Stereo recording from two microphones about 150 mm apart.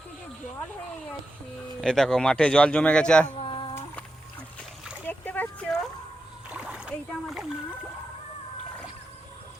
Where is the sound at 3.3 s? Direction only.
35° left (ahead or behind).